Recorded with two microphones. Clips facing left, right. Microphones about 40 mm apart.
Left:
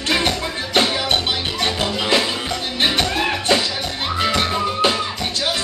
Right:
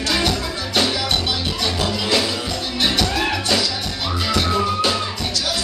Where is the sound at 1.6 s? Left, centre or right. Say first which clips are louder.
Left 2 dB; left.